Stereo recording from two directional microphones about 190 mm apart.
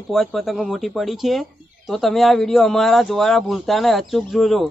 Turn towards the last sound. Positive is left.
turn(degrees=0)  # may be behind; listen again after turning